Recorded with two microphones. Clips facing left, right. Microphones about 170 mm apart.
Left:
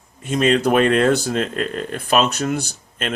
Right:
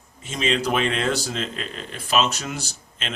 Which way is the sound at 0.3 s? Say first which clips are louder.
Left 7 dB; 50° left (ahead or behind).